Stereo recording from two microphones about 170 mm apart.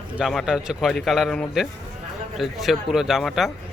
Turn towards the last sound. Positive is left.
turn(degrees=0)  # may be behind; listen again after turning